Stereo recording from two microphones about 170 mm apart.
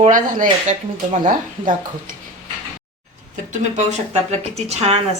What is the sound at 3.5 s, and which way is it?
A woman's voice, 45° right (ahead or behind).